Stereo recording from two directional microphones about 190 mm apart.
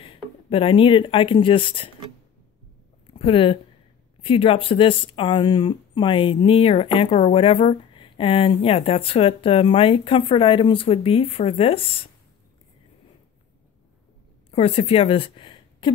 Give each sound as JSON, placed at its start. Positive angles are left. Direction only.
{"t": 0.0, "sound": "speech", "side_deg": 30}
{"t": 3.1, "sound": "speech", "side_deg": 30}
{"t": 14.5, "sound": "a woman's voice", "side_deg": 30}